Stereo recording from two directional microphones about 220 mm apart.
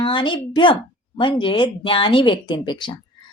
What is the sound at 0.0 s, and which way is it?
A woman's voice, 20° left (ahead or behind).